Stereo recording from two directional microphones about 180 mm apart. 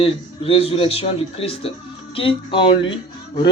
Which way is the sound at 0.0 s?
30° left (ahead or behind).